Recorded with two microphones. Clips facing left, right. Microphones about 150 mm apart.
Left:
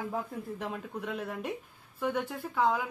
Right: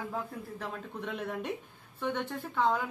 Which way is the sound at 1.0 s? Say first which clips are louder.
Right 1 dB; 5° left (ahead or behind).